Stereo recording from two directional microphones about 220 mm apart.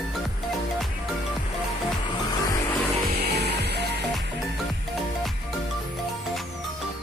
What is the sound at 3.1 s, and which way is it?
Music, 50° right (ahead or behind).